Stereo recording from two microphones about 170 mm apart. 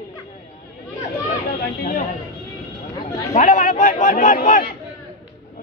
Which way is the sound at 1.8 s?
50° left (ahead or behind).